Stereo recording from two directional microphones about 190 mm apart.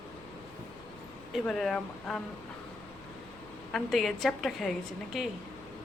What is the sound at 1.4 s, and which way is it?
Speech, 5° left (ahead or behind).